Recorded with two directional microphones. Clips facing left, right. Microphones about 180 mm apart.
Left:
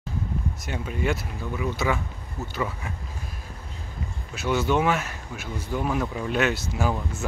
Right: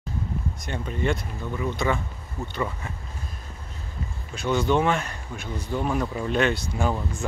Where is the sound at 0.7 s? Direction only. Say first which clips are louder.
Right 1 dB; 5° left (ahead or behind).